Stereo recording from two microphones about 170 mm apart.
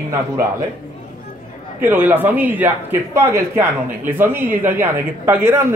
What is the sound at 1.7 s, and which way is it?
A man's voice, 10° right (ahead or behind).